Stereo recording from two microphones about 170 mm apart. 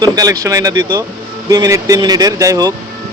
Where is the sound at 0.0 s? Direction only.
20° right (ahead or behind).